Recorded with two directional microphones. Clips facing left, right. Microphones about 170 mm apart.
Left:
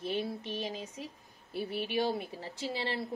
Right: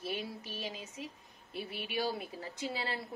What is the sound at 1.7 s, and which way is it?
Speech, centre (ahead or behind).